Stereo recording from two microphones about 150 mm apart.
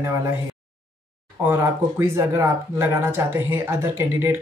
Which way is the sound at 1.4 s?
15° right (ahead or behind).